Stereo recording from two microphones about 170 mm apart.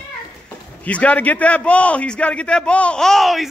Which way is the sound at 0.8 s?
10° left (ahead or behind).